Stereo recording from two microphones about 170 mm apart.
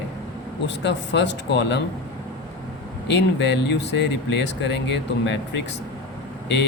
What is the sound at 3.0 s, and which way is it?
A man's voice, 90° left.